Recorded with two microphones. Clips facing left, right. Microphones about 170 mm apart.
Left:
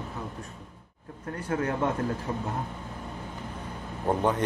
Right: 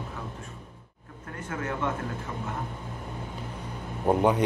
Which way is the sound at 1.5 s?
35° left (ahead or behind).